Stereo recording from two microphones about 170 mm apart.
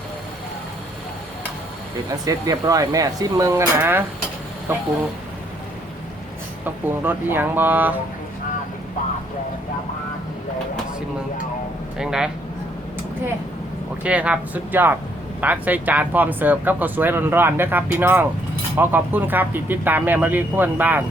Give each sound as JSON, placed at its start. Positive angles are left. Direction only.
{"t": 2.0, "sound": "speech", "side_deg": -20}
{"t": 6.7, "sound": "speech", "side_deg": -10}
{"t": 11.9, "sound": "speech", "side_deg": -5}
{"t": 14.0, "sound": "speech", "side_deg": -10}